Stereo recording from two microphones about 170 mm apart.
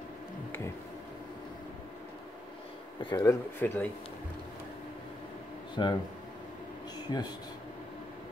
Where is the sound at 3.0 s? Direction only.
20° left (ahead or behind).